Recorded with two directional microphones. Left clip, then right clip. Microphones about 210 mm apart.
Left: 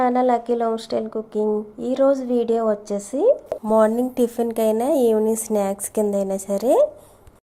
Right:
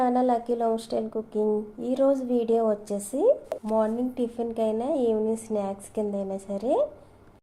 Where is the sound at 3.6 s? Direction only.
30° left (ahead or behind).